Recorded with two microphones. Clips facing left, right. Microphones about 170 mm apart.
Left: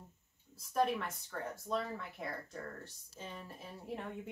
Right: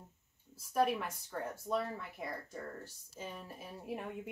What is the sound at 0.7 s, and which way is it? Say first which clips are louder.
Speech: right 1 dB; 10° right (ahead or behind).